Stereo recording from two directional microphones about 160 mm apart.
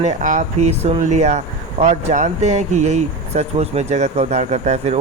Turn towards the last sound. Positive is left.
turn(degrees=-45)  # may be behind; listen again after turning